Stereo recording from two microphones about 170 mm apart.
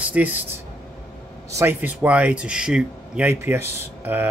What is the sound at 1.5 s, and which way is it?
Speech, 15° right (ahead or behind).